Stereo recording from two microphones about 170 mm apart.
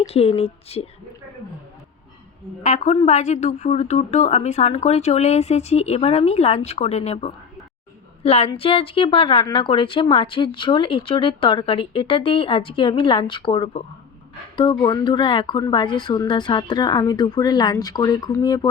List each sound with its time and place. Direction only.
0.0 s speech: 35° left (ahead or behind)
2.6 s a woman's voice: 45° left (ahead or behind); by 18.7 s 25° left (ahead or behind)